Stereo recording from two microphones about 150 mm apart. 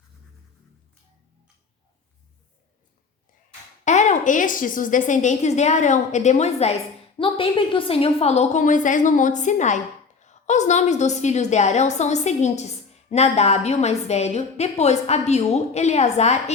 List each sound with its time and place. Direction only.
3.8 s a woman's voice: 50° left (ahead or behind)